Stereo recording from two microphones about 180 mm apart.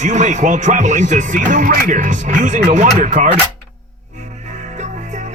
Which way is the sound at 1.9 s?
45° right (ahead or behind).